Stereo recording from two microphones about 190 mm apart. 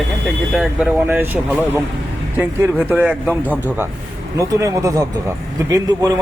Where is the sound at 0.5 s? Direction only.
Centre (ahead or behind).